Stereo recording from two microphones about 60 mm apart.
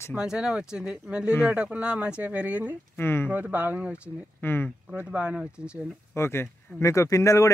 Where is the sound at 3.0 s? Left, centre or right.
Left.